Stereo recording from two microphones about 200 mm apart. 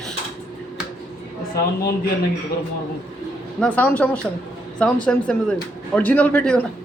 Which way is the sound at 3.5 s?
5° left (ahead or behind).